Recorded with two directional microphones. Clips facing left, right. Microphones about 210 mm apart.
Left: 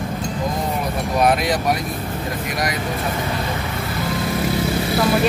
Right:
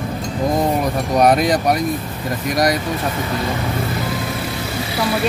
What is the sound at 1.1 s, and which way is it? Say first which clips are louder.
Speech: right 4 dB; 40° right (ahead or behind).